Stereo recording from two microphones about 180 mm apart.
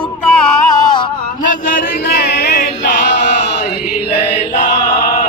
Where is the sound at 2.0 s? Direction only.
65° left (ahead or behind).